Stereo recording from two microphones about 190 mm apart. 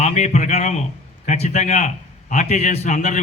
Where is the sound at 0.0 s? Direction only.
35° left (ahead or behind).